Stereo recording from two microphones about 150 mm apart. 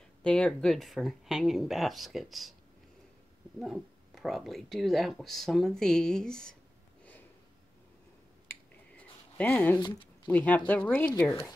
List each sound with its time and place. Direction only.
0.2 s speech: 5° left (ahead or behind)
3.5 s speech: centre (ahead or behind)
8.5 s finger snapping: 10° left (ahead or behind)
9.8 s speech: 30° left (ahead or behind)
10.2 s speech: 10° left (ahead or behind)